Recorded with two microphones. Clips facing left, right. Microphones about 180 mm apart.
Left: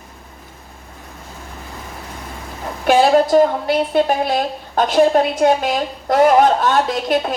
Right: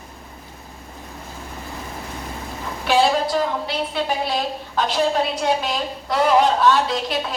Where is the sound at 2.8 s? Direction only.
50° left (ahead or behind).